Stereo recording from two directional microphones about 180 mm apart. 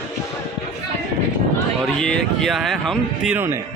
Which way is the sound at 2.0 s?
5° left (ahead or behind).